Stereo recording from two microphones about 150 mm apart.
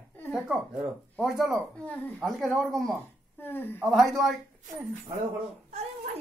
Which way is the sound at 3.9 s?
Centre (ahead or behind).